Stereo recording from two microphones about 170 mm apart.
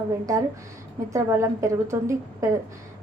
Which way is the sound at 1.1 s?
15° right (ahead or behind).